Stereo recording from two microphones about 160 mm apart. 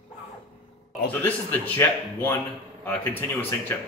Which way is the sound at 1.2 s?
10° left (ahead or behind).